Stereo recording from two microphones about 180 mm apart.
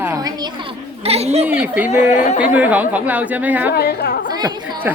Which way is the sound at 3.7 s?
60° left (ahead or behind).